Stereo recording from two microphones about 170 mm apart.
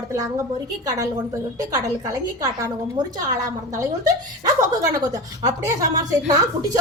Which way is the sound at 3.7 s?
20° right (ahead or behind).